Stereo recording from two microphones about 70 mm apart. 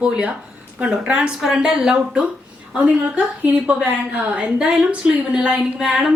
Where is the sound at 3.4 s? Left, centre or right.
Right.